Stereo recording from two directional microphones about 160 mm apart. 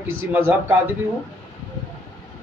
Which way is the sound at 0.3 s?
15° right (ahead or behind).